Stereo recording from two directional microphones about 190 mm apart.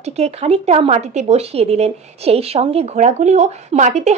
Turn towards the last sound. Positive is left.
turn(degrees=-35)  # may be behind; listen again after turning